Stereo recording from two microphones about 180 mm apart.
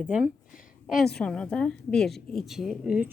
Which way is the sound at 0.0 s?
5° right (ahead or behind).